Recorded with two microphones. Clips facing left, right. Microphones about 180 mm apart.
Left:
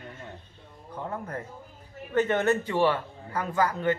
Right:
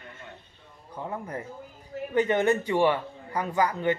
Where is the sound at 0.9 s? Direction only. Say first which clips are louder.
Even; 10° right (ahead or behind).